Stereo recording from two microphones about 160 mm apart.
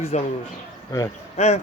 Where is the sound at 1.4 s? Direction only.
45° left (ahead or behind).